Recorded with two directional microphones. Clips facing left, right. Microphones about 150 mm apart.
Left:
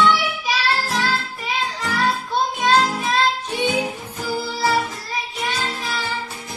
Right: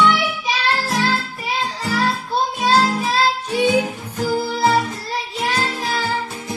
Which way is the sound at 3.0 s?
30° right (ahead or behind).